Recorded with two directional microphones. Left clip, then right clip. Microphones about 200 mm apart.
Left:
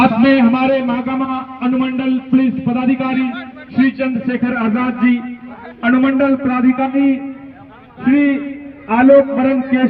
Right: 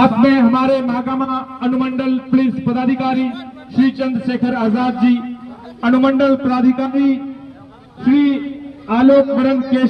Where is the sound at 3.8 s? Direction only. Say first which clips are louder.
Left 1 dB; 40° right (ahead or behind).